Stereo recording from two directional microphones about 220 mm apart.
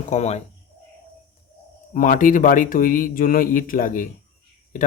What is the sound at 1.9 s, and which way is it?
A man's voice, 35° left (ahead or behind).